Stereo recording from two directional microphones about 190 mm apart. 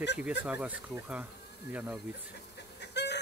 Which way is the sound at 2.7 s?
65° left (ahead or behind).